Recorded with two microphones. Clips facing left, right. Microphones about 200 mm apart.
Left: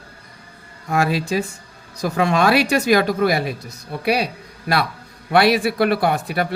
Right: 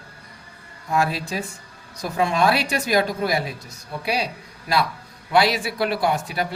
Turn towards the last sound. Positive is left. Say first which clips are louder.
# left 3 dB
turn(degrees=60)  # may be behind; listen again after turning